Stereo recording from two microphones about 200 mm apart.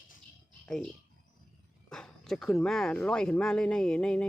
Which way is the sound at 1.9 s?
Centre (ahead or behind).